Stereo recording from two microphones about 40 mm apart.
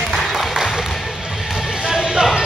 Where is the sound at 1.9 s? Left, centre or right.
Centre.